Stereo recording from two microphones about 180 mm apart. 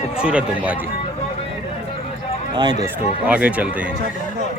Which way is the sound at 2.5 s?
25° right (ahead or behind).